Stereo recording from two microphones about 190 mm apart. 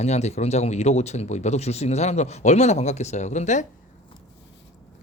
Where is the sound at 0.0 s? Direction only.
35° left (ahead or behind).